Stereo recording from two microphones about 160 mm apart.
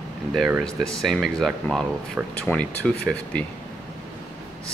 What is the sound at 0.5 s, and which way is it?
Speech, centre (ahead or behind).